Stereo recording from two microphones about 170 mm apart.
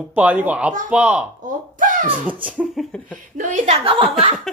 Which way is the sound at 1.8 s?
50° right (ahead or behind).